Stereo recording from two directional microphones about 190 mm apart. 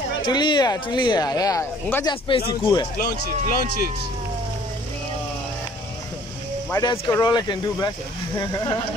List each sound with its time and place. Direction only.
0.2 s speech: 25° left (ahead or behind)
2.0 s speech: 25° left (ahead or behind)
3.0 s speech: 50° left (ahead or behind)
6.7 s speech: 20° left (ahead or behind)